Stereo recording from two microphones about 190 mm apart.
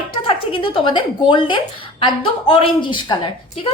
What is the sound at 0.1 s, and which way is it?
A woman's voice, 30° left (ahead or behind).